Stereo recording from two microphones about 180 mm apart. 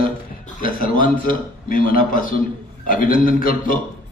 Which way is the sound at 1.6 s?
50° left (ahead or behind).